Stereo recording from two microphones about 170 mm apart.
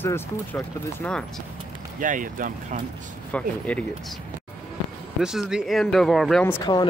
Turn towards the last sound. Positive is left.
turn(degrees=25)  # may be behind; listen again after turning